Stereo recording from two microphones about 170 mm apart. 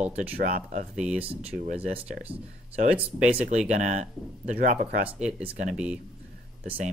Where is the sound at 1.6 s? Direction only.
40° right (ahead or behind).